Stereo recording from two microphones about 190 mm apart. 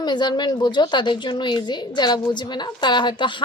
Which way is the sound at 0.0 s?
25° left (ahead or behind).